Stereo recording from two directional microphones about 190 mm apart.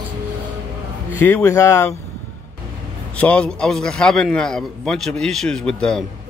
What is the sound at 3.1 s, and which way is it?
A man's voice, 5° left (ahead or behind).